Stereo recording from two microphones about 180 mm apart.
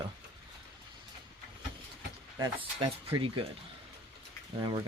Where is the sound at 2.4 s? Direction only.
25° right (ahead or behind).